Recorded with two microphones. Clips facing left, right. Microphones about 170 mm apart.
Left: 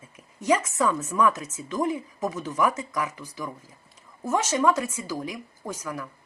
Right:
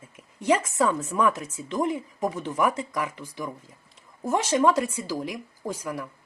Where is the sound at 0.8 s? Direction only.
30° right (ahead or behind).